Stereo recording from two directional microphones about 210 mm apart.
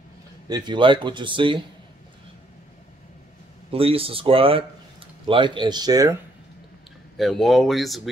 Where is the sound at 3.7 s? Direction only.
25° right (ahead or behind).